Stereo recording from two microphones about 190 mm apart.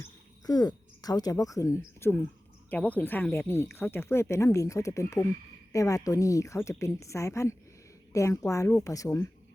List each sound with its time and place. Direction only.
0.4 s speech: 20° left (ahead or behind)